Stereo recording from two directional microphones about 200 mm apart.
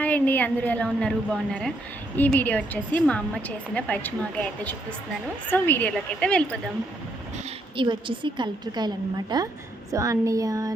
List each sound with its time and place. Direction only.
0.0 s a woman's voice: 10° left (ahead or behind)
7.8 s a woman's voice: 25° right (ahead or behind)
9.9 s a sound: 15° right (ahead or behind)